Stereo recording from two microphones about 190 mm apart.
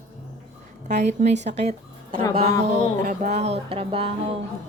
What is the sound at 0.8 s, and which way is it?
A woman's voice, 40° right (ahead or behind).